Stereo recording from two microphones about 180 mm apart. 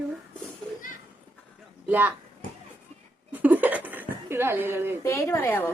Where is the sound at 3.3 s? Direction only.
10° right (ahead or behind).